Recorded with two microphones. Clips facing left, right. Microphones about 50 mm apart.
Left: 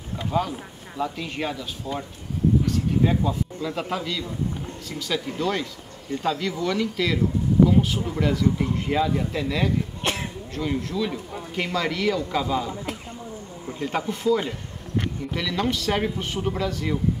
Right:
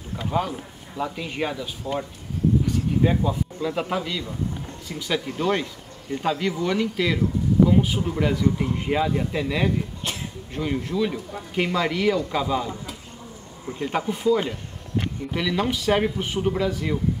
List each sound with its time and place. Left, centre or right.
0.3 s speech: centre
10.0 s a sound: left
10.5 s speech: centre
13.7 s speech: centre